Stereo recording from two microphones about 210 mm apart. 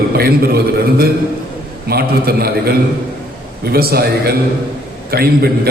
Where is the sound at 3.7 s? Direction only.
45° right (ahead or behind).